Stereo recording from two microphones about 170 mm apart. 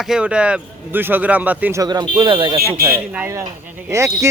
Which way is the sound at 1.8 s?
25° right (ahead or behind).